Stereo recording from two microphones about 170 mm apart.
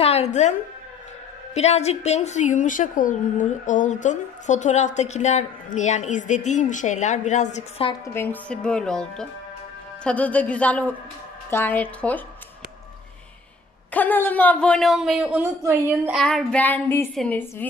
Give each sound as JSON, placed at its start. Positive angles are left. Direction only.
{"t": 0.0, "sound": "a woman's voice", "side_deg": 40}
{"t": 8.0, "sound": "a woman's voice", "side_deg": 15}
{"t": 13.9, "sound": "a woman's voice", "side_deg": 10}
{"t": 16.2, "sound": "speech", "side_deg": 0}